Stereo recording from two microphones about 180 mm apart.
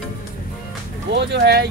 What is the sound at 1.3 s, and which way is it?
Speech, 70° right (ahead or behind).